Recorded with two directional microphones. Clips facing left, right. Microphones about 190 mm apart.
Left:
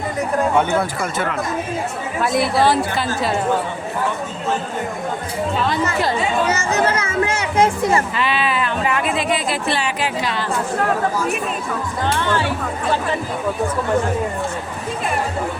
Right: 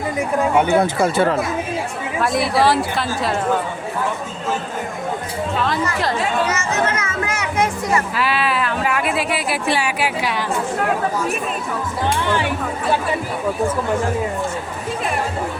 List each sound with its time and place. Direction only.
0.2 s speech: 10° right (ahead or behind)
0.9 s speech: 30° right (ahead or behind)
2.2 s a woman's voice: centre (ahead or behind)
6.0 s a woman's voice: centre (ahead or behind)
6.5 s speech: 35° left (ahead or behind)
8.1 s speech: 5° right (ahead or behind)
12.0 s speech: 15° right (ahead or behind)